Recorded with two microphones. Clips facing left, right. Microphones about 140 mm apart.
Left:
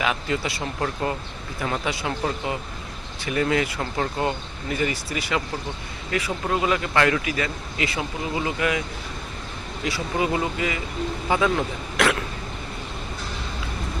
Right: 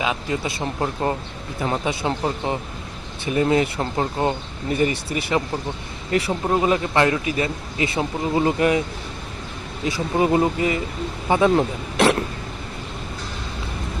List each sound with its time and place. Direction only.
0.0 s speech: 20° right (ahead or behind); by 8.8 s 35° right (ahead or behind)
10.2 s speech: 35° right (ahead or behind)